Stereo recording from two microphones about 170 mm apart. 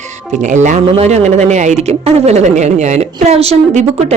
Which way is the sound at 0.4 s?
45° right (ahead or behind).